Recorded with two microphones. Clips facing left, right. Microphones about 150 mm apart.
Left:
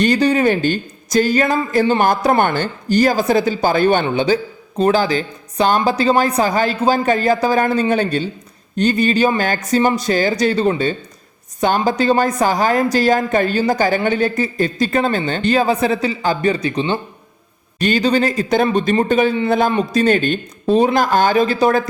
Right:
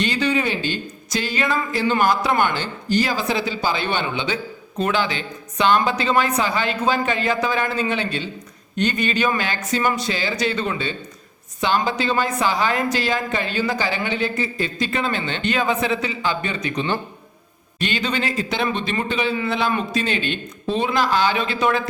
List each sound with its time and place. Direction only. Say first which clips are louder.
0.0 s a woman's voice: left 7 dB; 45° left (ahead or behind); by 17.0 s 25° left (ahead or behind)
17.7 s a woman's voice: left 8 dB; 40° left (ahead or behind)